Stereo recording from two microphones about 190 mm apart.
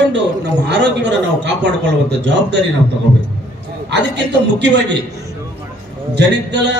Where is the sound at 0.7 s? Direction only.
65° right (ahead or behind).